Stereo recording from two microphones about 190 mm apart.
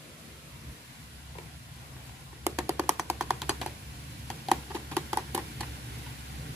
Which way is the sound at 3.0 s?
5° right (ahead or behind).